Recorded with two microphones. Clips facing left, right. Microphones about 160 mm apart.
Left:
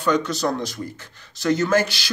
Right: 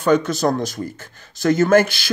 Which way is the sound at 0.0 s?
50° right (ahead or behind).